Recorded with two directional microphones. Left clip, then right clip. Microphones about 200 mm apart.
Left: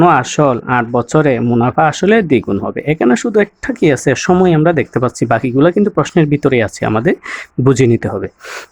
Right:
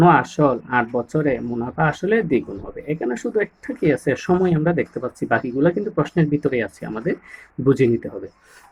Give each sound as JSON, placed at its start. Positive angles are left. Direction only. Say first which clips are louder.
{"t": 0.0, "sound": "speech", "louder": "left 5 dB", "side_deg": 60}